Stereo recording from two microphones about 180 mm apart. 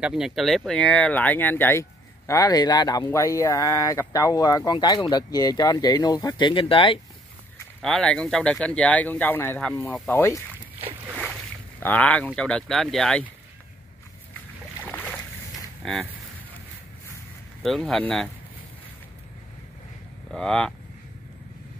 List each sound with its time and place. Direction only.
0.0 s speech: 5° right (ahead or behind); by 7.0 s 30° left (ahead or behind)
7.8 s speech: 5° left (ahead or behind)
11.8 s speech: 10° left (ahead or behind)
15.8 s speech: centre (ahead or behind)
17.6 s speech: centre (ahead or behind)
20.2 s speech: 5° left (ahead or behind)